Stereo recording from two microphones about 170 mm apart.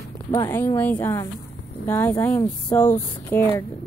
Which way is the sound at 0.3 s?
15° left (ahead or behind).